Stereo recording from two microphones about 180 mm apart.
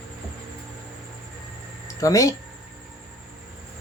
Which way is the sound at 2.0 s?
20° left (ahead or behind).